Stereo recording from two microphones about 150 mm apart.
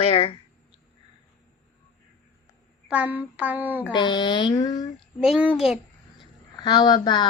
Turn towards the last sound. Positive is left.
turn(degrees=25)  # may be behind; listen again after turning